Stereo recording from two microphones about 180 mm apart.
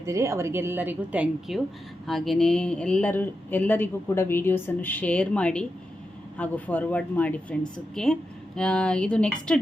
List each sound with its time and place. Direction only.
0.0 s a woman's voice: 15° right (ahead or behind); by 9.6 s 5° left (ahead or behind)